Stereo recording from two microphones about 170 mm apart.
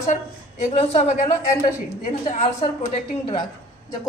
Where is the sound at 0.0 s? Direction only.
45° left (ahead or behind).